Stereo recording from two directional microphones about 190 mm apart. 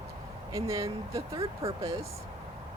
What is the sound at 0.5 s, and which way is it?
Speech, 15° right (ahead or behind).